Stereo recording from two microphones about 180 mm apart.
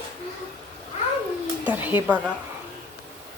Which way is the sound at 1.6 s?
10° right (ahead or behind).